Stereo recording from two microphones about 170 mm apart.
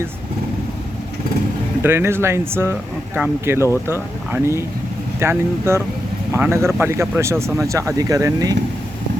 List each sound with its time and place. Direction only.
1.8 s speech: 15° right (ahead or behind)